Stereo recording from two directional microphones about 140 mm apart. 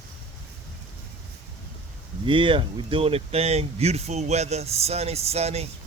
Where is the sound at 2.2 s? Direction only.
35° right (ahead or behind).